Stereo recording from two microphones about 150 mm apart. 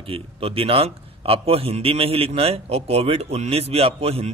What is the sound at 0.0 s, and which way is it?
A man's voice, 40° right (ahead or behind).